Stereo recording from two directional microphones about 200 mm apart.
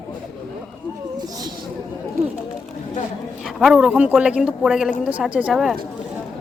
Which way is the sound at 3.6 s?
5° right (ahead or behind).